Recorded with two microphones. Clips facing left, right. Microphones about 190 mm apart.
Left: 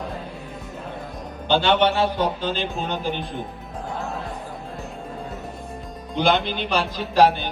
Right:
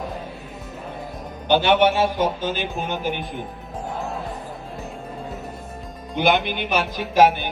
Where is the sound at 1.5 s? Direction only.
15° right (ahead or behind).